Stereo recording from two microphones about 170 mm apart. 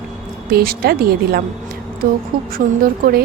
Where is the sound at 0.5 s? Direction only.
65° right (ahead or behind).